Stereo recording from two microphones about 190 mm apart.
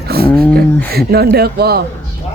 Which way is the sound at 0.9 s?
55° right (ahead or behind).